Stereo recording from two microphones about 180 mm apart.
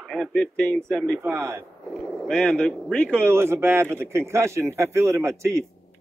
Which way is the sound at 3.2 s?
15° right (ahead or behind).